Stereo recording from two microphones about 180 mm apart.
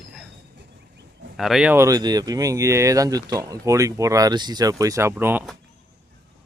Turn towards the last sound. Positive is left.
turn(degrees=-10)  # may be behind; listen again after turning